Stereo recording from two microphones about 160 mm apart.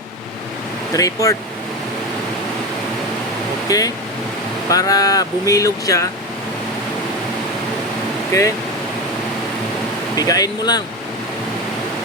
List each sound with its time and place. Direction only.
0.9 s speech: 20° left (ahead or behind)
3.7 s speech: 20° left (ahead or behind)
8.3 s speech: 20° left (ahead or behind)
10.2 s speech: 25° left (ahead or behind)